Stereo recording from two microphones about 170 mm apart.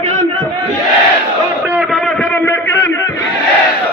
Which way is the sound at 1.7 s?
Centre (ahead or behind).